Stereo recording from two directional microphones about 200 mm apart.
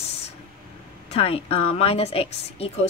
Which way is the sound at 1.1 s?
30° left (ahead or behind).